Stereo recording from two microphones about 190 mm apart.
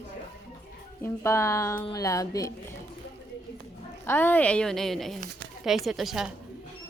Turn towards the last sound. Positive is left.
turn(degrees=0)  # may be behind; listen again after turning